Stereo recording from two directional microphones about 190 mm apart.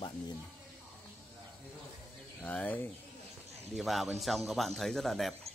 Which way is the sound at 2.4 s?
10° left (ahead or behind).